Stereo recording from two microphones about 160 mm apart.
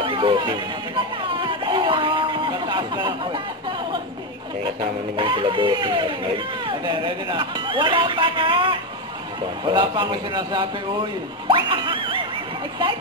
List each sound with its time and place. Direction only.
0.0 s chatter: 30° right (ahead or behind)
5.1 s speech: 30° right (ahead or behind)